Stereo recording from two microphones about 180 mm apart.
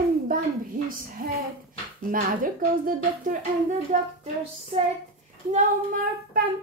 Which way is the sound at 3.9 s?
40° right (ahead or behind).